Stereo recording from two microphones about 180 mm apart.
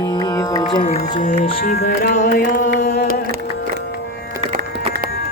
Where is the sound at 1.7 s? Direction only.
60° left (ahead or behind).